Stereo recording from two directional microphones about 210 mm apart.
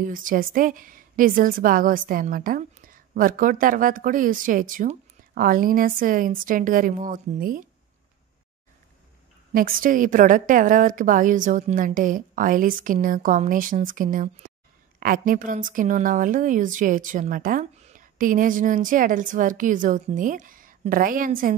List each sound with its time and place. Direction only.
0.0 s a woman's voice: 40° right (ahead or behind)
9.5 s a woman's voice: 45° right (ahead or behind)